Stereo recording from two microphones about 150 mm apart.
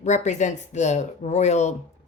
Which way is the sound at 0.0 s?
50° left (ahead or behind).